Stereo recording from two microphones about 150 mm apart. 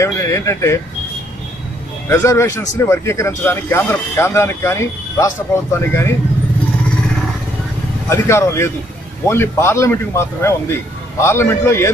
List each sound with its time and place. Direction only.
0.0 s speech: 20° left (ahead or behind)
2.0 s speech: 20° left (ahead or behind)
8.1 s speech: 20° left (ahead or behind)